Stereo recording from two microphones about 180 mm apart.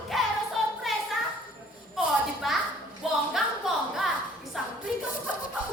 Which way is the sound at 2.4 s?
Centre (ahead or behind).